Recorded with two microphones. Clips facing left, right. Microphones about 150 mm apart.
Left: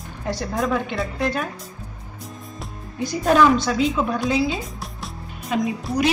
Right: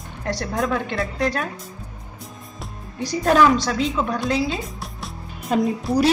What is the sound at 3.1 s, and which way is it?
A woman's voice, centre (ahead or behind).